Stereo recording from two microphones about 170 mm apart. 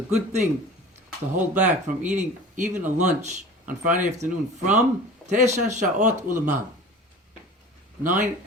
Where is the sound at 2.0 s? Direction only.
45° right (ahead or behind).